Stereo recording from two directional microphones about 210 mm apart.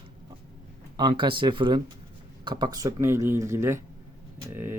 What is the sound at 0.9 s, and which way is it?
Speech, 20° right (ahead or behind).